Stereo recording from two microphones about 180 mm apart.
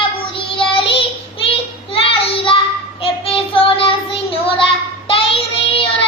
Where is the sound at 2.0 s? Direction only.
30° left (ahead or behind).